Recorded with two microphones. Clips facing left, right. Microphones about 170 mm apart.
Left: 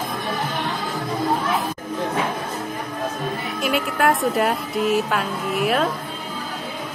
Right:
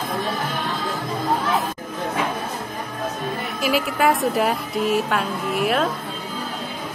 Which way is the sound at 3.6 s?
Centre (ahead or behind).